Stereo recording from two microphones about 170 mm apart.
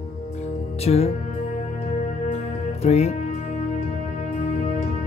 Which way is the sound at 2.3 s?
40° left (ahead or behind).